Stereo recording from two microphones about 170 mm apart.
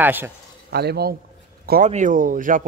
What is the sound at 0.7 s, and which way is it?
Speech, 70° right (ahead or behind).